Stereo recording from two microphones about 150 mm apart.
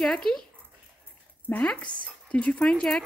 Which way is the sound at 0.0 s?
5° left (ahead or behind).